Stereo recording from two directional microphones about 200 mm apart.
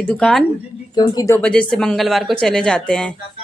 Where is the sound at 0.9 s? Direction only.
15° left (ahead or behind).